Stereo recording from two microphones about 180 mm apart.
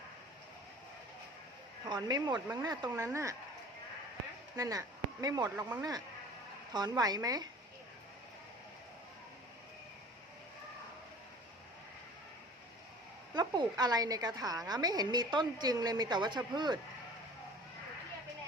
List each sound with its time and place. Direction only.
1.9 s a woman's voice: 25° right (ahead or behind)
4.5 s speech: 20° right (ahead or behind)
6.7 s a woman's voice: 20° right (ahead or behind)
13.3 s a woman's voice: 25° right (ahead or behind)